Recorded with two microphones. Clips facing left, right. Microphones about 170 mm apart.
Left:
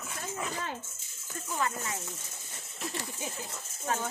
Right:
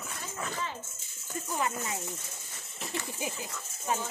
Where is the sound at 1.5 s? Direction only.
15° right (ahead or behind).